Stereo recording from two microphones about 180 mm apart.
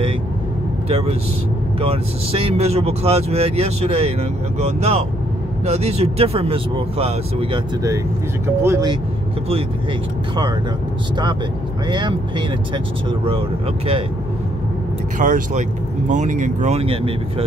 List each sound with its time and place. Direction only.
0.8 s speech: 30° right (ahead or behind)
11.9 s speech: 25° right (ahead or behind)
15.1 s speech: 45° right (ahead or behind); by 17.1 s 30° right (ahead or behind)